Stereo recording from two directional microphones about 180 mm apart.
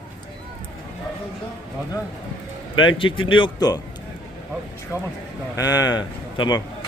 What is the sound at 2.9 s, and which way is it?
Speech, 30° left (ahead or behind).